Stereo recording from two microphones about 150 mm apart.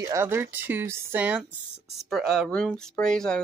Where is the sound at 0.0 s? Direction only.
20° right (ahead or behind).